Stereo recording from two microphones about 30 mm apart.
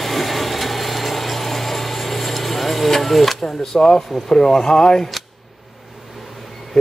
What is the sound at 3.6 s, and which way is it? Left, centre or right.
Speech, left.